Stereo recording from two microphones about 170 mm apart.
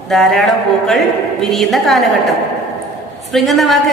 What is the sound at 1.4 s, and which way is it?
A woman's voice, centre (ahead or behind).